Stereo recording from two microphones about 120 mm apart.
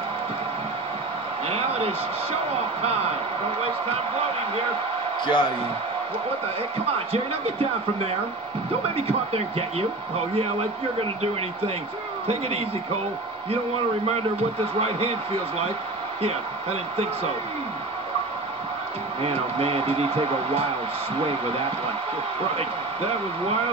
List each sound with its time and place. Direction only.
1.5 s a sound: 55° right (ahead or behind)
5.2 s a man's voice: 40° left (ahead or behind)
8.9 s speech: 55° right (ahead or behind)
12.3 s speech: 60° right (ahead or behind)
14.8 s speech: 55° right (ahead or behind)
19.2 s speech: 55° right (ahead or behind)